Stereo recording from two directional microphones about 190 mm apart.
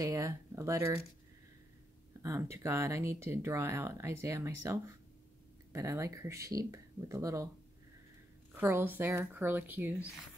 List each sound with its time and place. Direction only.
0.0 s speech: 15° right (ahead or behind)
2.2 s speech: 15° right (ahead or behind)
8.5 s speech: 10° right (ahead or behind)